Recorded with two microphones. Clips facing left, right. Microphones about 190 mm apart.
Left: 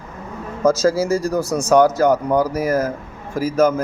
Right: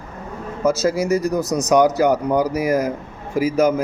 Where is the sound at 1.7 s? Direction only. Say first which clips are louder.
Left 1 dB; 15° right (ahead or behind).